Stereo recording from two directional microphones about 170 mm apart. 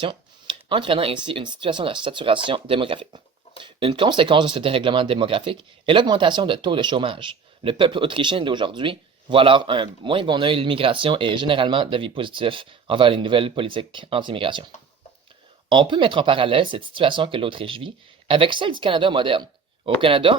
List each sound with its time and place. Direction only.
0.0 s speech: 30° right (ahead or behind)
15.7 s speech: 30° right (ahead or behind)